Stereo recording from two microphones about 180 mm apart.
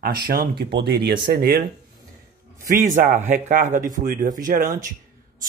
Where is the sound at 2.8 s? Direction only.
45° right (ahead or behind).